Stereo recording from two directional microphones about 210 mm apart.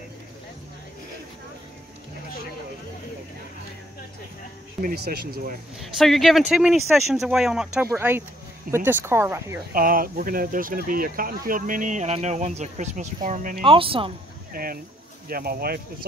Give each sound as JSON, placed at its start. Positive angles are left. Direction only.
{"t": 4.8, "sound": "speech", "side_deg": -45}
{"t": 5.8, "sound": "speech", "side_deg": 0}
{"t": 9.8, "sound": "speech", "side_deg": -40}
{"t": 13.6, "sound": "speech", "side_deg": -25}
{"t": 14.5, "sound": "speech", "side_deg": -45}